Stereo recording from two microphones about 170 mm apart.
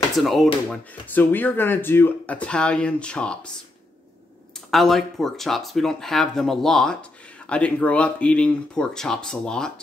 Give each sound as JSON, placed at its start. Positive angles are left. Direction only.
{"t": 0.2, "sound": "speech", "side_deg": 0}
{"t": 4.6, "sound": "speech", "side_deg": 0}